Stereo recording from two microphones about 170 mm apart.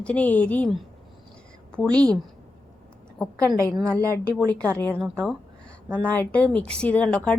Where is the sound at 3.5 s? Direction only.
20° right (ahead or behind).